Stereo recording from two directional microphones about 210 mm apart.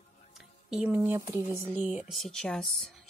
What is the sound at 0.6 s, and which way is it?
Speech, 5° right (ahead or behind).